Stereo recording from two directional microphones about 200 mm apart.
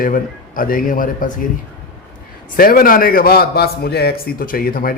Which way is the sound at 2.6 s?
45° left (ahead or behind).